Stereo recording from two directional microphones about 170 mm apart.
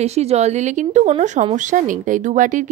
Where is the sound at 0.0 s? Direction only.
40° right (ahead or behind).